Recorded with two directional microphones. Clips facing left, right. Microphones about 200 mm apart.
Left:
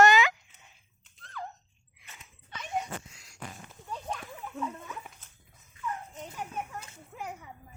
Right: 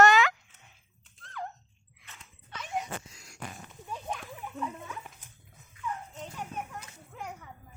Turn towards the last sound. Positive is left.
turn(degrees=10)  # may be behind; listen again after turning